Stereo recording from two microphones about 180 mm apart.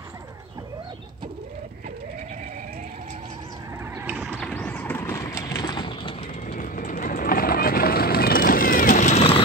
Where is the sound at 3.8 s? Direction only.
15° right (ahead or behind).